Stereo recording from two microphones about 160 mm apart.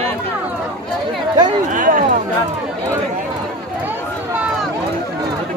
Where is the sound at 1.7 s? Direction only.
55° right (ahead or behind).